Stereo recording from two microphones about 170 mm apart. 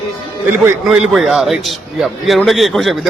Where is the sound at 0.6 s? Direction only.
5° right (ahead or behind).